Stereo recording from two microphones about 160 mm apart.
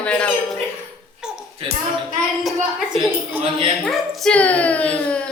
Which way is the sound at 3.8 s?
Centre (ahead or behind).